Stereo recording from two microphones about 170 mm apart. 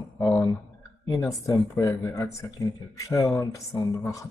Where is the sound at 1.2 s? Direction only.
20° left (ahead or behind).